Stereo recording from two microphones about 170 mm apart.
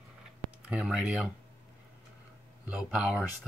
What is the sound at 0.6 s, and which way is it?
Speech, 5° right (ahead or behind).